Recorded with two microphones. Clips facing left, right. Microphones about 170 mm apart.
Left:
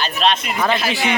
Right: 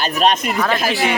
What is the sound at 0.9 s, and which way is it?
Speech, centre (ahead or behind).